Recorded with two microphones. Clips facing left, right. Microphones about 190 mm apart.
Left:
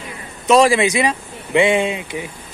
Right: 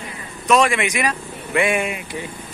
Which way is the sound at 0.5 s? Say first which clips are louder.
Left 4 dB; 30° left (ahead or behind).